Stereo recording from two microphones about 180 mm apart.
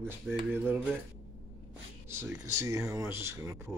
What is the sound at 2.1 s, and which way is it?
Speech, 15° right (ahead or behind).